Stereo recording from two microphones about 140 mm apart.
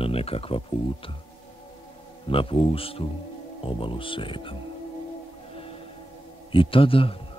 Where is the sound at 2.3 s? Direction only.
40° left (ahead or behind).